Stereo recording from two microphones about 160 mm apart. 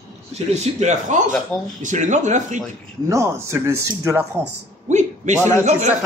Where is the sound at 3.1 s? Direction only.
20° right (ahead or behind).